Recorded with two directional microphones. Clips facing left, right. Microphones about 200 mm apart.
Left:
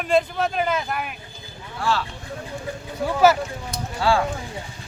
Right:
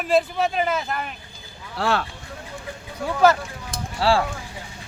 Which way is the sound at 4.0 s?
35° right (ahead or behind).